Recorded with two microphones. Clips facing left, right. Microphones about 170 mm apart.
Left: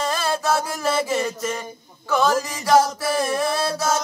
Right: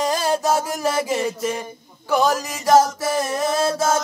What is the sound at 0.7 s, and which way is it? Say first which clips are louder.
Music: right 1 dB; 15° right (ahead or behind).